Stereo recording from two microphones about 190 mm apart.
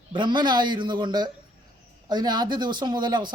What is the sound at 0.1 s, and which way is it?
Speech, 25° right (ahead or behind).